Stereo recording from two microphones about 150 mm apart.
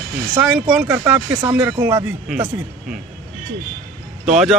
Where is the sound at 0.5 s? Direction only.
10° right (ahead or behind).